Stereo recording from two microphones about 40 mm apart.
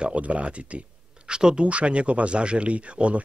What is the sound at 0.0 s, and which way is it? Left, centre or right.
Speech, right.